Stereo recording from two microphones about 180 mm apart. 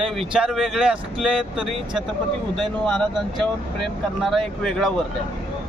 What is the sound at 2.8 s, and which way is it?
Speech, centre (ahead or behind).